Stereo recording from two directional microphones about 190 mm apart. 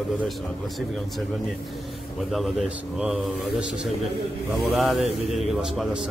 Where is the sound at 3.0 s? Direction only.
5° right (ahead or behind).